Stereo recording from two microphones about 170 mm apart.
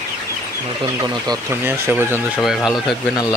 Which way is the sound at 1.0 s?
25° right (ahead or behind).